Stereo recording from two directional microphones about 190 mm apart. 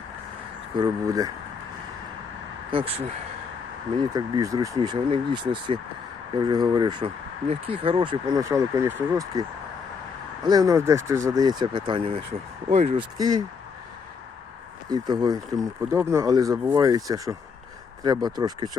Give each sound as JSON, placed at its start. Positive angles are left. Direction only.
{"t": 0.8, "sound": "speech", "side_deg": -20}
{"t": 2.6, "sound": "speech", "side_deg": -30}
{"t": 4.1, "sound": "speech", "side_deg": -20}
{"t": 14.8, "sound": "speech", "side_deg": -20}